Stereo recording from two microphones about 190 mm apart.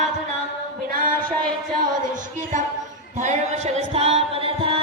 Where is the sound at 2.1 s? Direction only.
45° right (ahead or behind).